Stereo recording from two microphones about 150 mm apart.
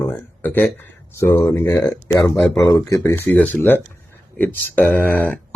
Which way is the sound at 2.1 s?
30° left (ahead or behind).